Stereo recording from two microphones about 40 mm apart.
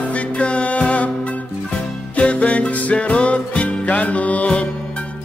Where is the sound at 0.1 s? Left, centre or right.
Left.